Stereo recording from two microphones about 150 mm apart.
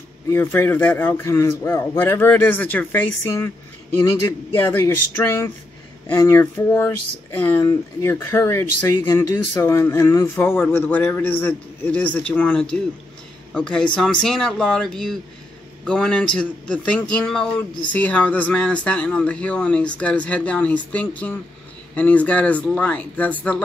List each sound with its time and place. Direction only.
0.3 s speech: 15° left (ahead or behind)
4.6 s a man's voice: 20° left (ahead or behind)